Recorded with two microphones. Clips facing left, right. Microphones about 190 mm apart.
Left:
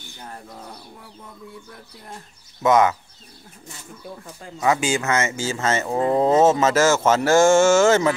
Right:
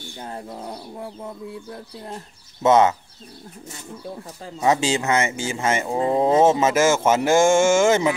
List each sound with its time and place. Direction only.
2.6 s speech: 25° right (ahead or behind)
4.6 s speech: 25° right (ahead or behind)